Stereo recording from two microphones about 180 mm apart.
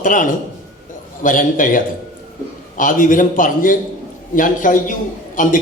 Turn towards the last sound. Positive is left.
turn(degrees=45)  # may be behind; listen again after turning